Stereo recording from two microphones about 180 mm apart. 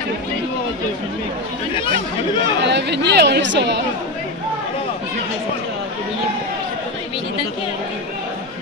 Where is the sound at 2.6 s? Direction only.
75° right (ahead or behind).